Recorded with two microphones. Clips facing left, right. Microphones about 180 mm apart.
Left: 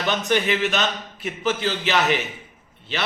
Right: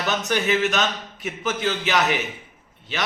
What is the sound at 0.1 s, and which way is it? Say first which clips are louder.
A man's voice: left 1 dB; 5° right (ahead or behind).